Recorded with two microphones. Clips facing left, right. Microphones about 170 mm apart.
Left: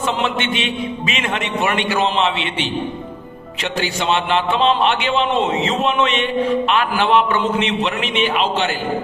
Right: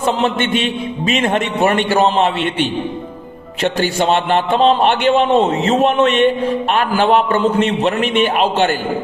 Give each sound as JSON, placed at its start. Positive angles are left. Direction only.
{"t": 0.0, "sound": "a man's voice", "side_deg": -45}